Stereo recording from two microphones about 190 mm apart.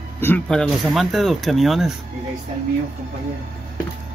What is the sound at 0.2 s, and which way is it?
Speech, 5° left (ahead or behind).